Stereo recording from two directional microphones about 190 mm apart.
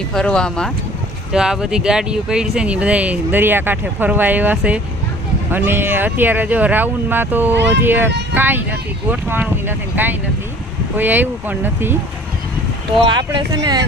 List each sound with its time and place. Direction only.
0.1 s speech: 5° left (ahead or behind)
7.5 s speech: 65° right (ahead or behind)
7.8 s speech: 10° right (ahead or behind)
13.0 s speech: 25° right (ahead or behind)